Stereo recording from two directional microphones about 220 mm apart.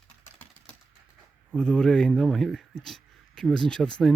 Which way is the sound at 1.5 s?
5° left (ahead or behind).